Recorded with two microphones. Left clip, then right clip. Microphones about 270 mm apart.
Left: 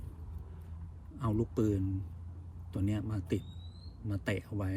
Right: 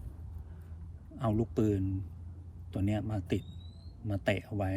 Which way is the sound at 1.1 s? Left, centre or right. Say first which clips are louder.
Right 2 dB; centre.